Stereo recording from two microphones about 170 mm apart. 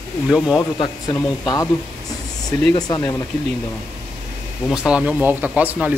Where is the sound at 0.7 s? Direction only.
20° left (ahead or behind).